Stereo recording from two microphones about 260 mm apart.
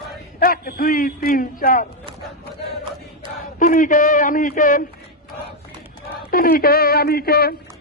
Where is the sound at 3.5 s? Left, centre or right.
Left.